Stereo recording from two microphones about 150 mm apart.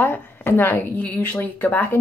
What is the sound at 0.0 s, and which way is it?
Speech, 15° left (ahead or behind).